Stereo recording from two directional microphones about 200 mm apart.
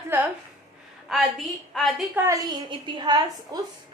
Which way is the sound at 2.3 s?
15° right (ahead or behind).